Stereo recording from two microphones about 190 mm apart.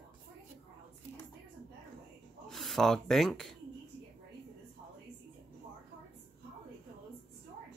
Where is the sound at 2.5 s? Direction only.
Centre (ahead or behind).